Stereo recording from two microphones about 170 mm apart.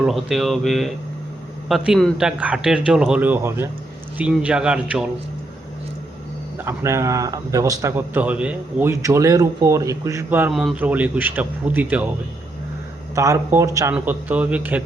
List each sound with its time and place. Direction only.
0.0 s a man's voice: centre (ahead or behind)
6.7 s a man's voice: 20° right (ahead or behind)
13.1 s a man's voice: 15° right (ahead or behind)